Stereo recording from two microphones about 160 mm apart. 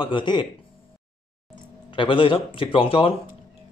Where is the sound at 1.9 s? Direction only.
30° left (ahead or behind).